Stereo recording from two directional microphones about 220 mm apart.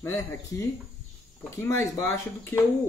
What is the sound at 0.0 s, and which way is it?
Speech, 10° left (ahead or behind).